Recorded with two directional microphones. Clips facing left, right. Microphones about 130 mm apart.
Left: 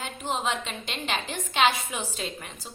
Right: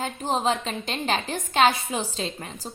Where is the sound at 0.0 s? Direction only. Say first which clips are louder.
Right 5 dB; 35° right (ahead or behind).